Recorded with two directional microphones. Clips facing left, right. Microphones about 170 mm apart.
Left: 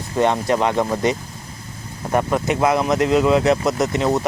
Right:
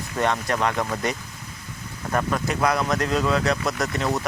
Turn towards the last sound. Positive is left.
turn(degrees=25)  # may be behind; listen again after turning